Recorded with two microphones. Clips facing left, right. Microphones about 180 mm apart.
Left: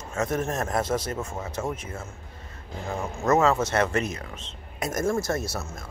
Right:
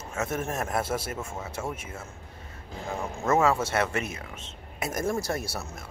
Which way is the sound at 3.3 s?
10° right (ahead or behind).